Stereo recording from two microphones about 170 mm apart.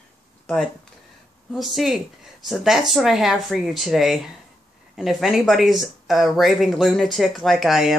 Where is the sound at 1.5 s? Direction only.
Centre (ahead or behind).